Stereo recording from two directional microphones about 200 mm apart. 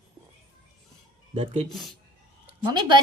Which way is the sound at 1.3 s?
25° right (ahead or behind).